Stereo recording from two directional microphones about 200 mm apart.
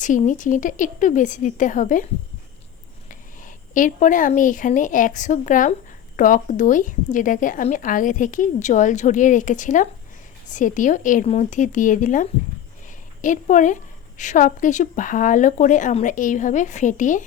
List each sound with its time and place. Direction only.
0.0 s a woman's voice: 40° left (ahead or behind)
3.1 s a woman's voice: 40° left (ahead or behind)